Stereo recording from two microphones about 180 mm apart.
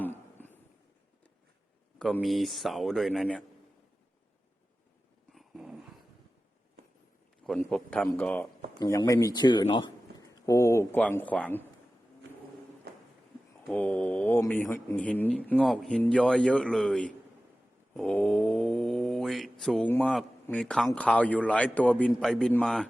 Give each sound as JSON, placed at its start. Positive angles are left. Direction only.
{"t": 2.0, "sound": "speech", "side_deg": 0}
{"t": 5.3, "sound": "dog", "side_deg": 0}
{"t": 7.4, "sound": "speech", "side_deg": 5}
{"t": 8.8, "sound": "a man's voice", "side_deg": 20}
{"t": 13.7, "sound": "speech", "side_deg": 5}
{"t": 17.9, "sound": "a sound", "side_deg": 5}
{"t": 19.9, "sound": "speech", "side_deg": 5}